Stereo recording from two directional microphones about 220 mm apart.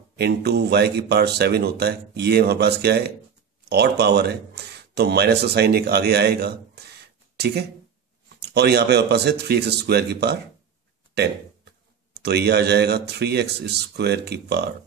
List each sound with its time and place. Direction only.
0.2 s speech: 50° right (ahead or behind)
12.1 s speech: 50° right (ahead or behind)